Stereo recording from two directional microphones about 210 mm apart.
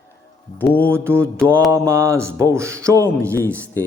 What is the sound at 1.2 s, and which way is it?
Mantra, 5° left (ahead or behind).